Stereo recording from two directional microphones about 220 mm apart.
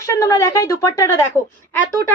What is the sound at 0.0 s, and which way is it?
Speech, 15° left (ahead or behind).